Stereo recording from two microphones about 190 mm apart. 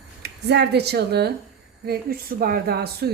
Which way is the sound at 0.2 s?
60° right (ahead or behind).